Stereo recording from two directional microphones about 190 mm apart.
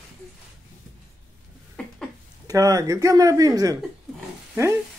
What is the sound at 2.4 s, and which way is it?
Speech, 20° right (ahead or behind).